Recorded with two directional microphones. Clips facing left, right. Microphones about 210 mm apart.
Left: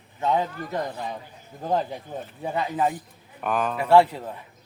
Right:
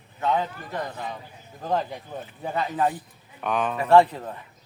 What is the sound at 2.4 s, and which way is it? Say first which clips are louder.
Speech: even; 15° left (ahead or behind).